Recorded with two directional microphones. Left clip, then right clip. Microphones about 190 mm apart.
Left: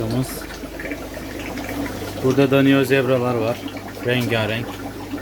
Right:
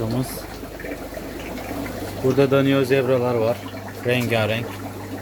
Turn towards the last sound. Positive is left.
turn(degrees=-5)  # may be behind; listen again after turning